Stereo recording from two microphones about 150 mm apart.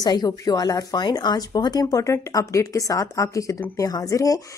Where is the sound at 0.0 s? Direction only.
25° left (ahead or behind).